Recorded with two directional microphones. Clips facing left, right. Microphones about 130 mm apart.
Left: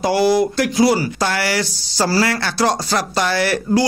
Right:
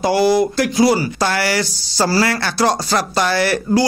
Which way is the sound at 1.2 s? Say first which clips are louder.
Right 1 dB; 40° right (ahead or behind).